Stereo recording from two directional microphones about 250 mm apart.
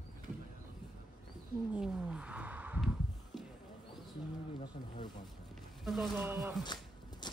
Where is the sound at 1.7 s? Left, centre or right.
Centre.